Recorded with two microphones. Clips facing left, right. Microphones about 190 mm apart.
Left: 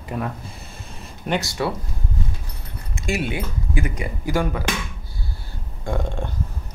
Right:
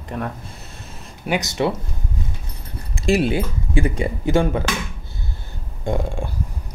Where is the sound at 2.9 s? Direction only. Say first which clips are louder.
Right 7 dB; 35° right (ahead or behind).